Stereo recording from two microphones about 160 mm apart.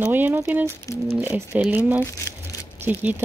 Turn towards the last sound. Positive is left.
turn(degrees=-10)  # may be behind; listen again after turning